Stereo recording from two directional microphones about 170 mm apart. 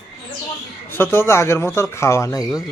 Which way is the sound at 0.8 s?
15° left (ahead or behind).